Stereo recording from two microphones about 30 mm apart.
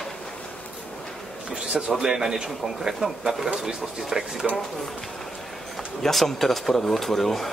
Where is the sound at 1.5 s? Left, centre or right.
Right.